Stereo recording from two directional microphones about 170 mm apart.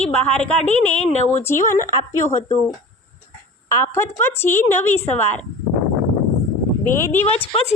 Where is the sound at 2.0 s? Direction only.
45° left (ahead or behind).